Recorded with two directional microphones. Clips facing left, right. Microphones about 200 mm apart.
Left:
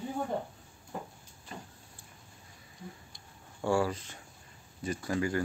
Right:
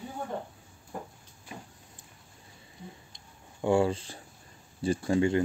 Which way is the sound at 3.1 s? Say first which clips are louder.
Right 3 dB; 20° right (ahead or behind).